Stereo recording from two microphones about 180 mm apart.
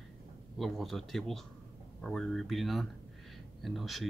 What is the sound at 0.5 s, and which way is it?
Speech, centre (ahead or behind).